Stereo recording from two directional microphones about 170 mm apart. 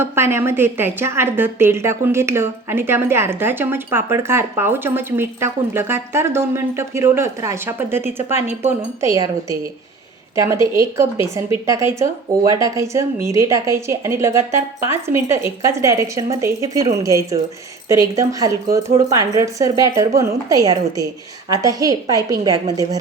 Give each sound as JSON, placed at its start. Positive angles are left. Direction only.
{"t": 0.0, "sound": "a woman's voice", "side_deg": -15}